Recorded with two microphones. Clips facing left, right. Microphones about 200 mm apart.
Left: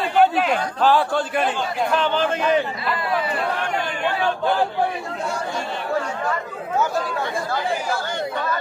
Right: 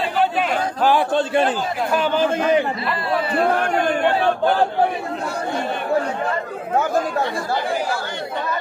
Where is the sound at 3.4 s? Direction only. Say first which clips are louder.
Right 6 dB; 50° right (ahead or behind).